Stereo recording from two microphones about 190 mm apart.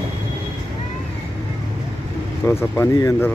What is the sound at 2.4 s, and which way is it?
Speech, 15° left (ahead or behind).